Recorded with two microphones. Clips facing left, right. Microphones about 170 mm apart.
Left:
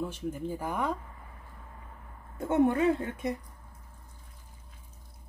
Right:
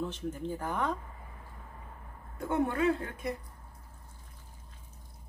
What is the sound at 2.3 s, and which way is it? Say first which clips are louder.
A woman's voice: left 5 dB; 20° left (ahead or behind).